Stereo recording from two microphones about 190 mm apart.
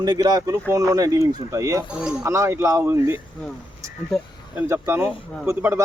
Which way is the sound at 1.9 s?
5° right (ahead or behind).